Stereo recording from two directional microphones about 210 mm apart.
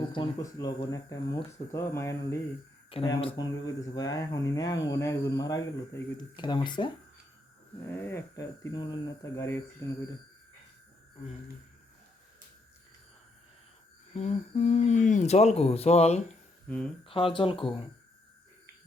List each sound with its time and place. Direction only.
0.0 s speech: 20° left (ahead or behind)
2.9 s speech: 25° left (ahead or behind)
7.9 s speech: 10° left (ahead or behind)
14.2 s speech: 30° left (ahead or behind)
16.6 s speech: 5° left (ahead or behind)
17.1 s speech: 25° left (ahead or behind)